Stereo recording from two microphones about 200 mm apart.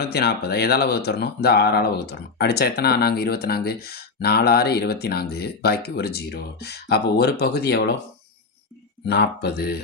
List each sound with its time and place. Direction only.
0.0 s speech: 55° left (ahead or behind)
9.0 s speech: 55° left (ahead or behind)